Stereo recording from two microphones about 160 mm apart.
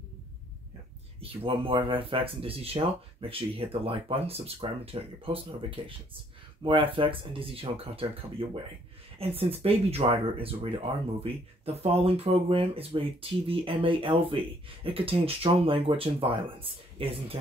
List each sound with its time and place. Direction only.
1.2 s speech: 35° right (ahead or behind)